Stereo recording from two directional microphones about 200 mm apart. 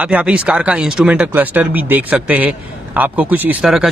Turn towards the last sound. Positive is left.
turn(degrees=0)  # may be behind; listen again after turning